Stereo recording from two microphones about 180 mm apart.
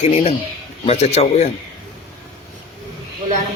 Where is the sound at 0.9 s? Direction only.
35° left (ahead or behind).